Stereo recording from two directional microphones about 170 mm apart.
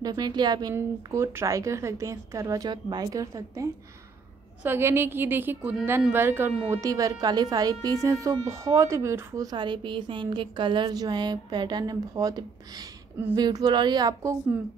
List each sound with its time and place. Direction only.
0.0 s a woman's voice: 25° right (ahead or behind)